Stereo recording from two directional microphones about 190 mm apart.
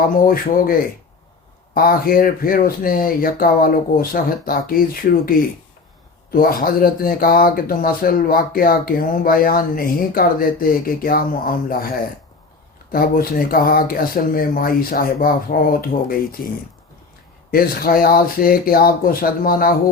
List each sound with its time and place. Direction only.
0.3 s speech: 50° left (ahead or behind)
6.3 s speech: 50° left (ahead or behind)
12.9 s speech: 50° left (ahead or behind)
17.5 s speech: 50° left (ahead or behind)